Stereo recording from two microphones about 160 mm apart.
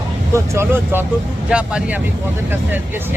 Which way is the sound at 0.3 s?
15° right (ahead or behind).